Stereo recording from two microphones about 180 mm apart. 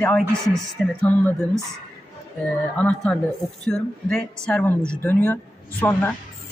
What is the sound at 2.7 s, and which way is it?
Speech, 5° left (ahead or behind).